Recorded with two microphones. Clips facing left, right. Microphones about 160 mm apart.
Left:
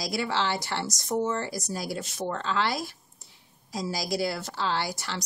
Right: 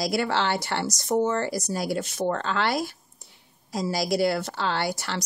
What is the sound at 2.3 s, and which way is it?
Speech, 65° right (ahead or behind).